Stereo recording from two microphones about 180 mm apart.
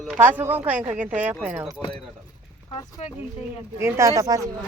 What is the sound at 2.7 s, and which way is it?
Speech, 20° left (ahead or behind).